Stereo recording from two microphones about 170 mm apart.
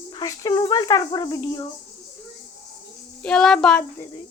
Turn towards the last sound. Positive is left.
turn(degrees=5)  # may be behind; listen again after turning